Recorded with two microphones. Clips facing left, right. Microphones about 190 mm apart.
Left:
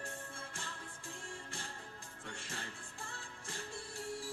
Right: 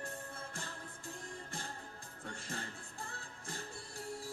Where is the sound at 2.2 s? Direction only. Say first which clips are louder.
Right 3 dB; 35° right (ahead or behind).